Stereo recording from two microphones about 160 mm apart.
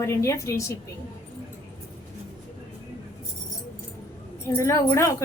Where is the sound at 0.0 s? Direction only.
20° left (ahead or behind).